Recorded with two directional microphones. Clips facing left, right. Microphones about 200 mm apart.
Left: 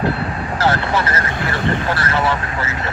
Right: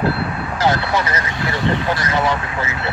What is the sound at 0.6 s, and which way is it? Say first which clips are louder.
Speech: even; 15° right (ahead or behind).